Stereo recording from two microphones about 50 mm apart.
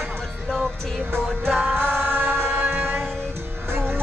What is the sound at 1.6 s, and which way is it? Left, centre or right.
Music, right.